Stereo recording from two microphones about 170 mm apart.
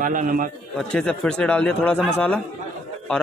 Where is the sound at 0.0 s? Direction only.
50° right (ahead or behind).